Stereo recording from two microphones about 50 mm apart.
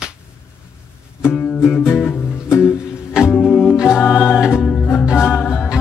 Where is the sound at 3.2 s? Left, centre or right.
Centre.